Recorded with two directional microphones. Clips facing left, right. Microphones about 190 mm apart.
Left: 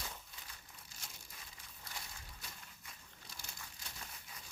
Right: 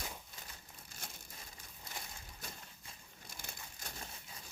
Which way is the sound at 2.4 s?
50° right (ahead or behind).